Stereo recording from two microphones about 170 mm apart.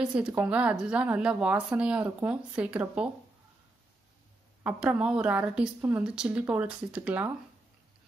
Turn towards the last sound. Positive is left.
turn(degrees=-10)  # may be behind; listen again after turning